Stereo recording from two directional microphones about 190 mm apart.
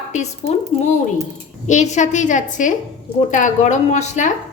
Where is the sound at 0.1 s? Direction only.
35° left (ahead or behind).